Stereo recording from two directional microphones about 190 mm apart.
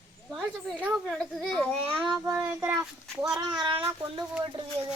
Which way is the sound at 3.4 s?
25° right (ahead or behind).